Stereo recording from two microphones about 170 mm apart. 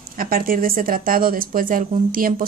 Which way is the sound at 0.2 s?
60° right (ahead or behind).